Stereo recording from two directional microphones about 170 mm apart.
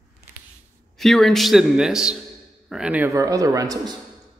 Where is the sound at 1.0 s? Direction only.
Centre (ahead or behind).